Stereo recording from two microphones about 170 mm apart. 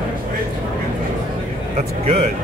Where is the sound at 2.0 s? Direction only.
35° right (ahead or behind).